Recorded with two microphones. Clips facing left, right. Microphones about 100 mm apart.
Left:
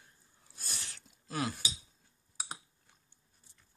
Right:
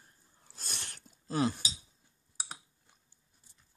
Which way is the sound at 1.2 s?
25° right (ahead or behind).